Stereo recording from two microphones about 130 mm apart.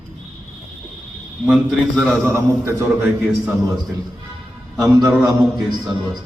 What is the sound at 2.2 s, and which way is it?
A man's voice, 20° right (ahead or behind).